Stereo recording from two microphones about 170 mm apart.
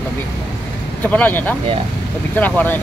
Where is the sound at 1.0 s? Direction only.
10° left (ahead or behind).